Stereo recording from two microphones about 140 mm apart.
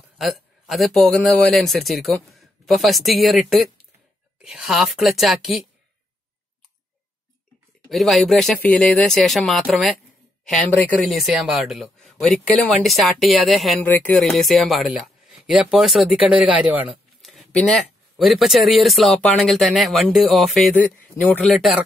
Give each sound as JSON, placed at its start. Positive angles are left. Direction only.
{"t": 0.2, "sound": "a man's voice", "side_deg": 0}
{"t": 7.9, "sound": "a man's voice", "side_deg": 0}
{"t": 11.0, "sound": "a man's voice", "side_deg": 0}
{"t": 13.8, "sound": "speech", "side_deg": 15}
{"t": 14.1, "sound": "a man's voice", "side_deg": 5}
{"t": 17.2, "sound": "a sound", "side_deg": 0}
{"t": 18.1, "sound": "a man's voice", "side_deg": 0}
{"t": 21.2, "sound": "speech", "side_deg": 10}